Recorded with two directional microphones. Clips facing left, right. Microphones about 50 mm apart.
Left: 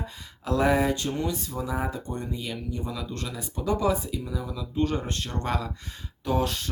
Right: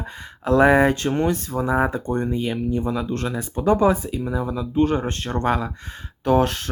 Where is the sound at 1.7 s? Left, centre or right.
Right.